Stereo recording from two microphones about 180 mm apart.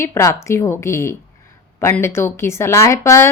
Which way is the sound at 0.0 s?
15° left (ahead or behind).